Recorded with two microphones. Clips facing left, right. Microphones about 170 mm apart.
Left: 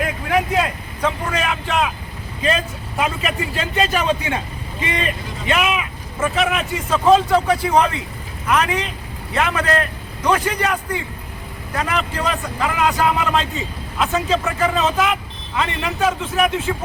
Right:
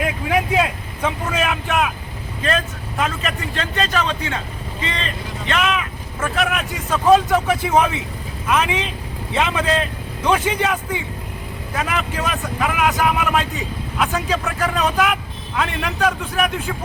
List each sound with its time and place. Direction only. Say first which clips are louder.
0.0 s vehicle: even; 5° right (ahead or behind)
2.4 s a man's voice: left 1 dB; 5° left (ahead or behind)